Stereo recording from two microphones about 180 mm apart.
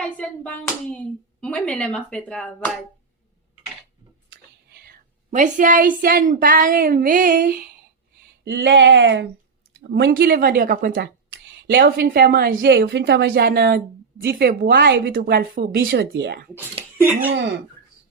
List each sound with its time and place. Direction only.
0.0 s speech: 5° left (ahead or behind)
4.3 s a woman's voice: 60° right (ahead or behind)
8.4 s a woman's voice: 70° right (ahead or behind); by 11.0 s 50° right (ahead or behind)
11.6 s a woman's voice: 65° right (ahead or behind)
15.9 s speech: 75° right (ahead or behind)
17.0 s speech: 10° right (ahead or behind)